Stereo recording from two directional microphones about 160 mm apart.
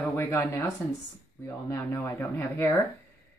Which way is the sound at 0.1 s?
15° left (ahead or behind).